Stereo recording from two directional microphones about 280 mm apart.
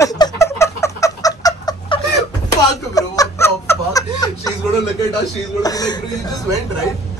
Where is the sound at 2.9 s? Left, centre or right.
Centre.